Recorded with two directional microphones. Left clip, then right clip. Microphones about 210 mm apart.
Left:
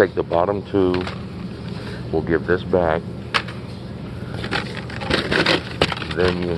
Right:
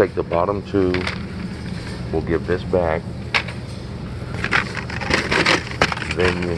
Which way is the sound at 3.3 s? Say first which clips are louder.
Right 1 dB; 55° left (ahead or behind).